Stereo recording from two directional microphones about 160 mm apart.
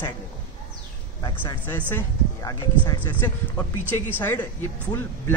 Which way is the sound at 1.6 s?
10° left (ahead or behind).